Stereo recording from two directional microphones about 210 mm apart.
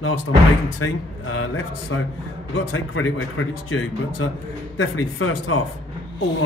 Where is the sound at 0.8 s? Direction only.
80° left.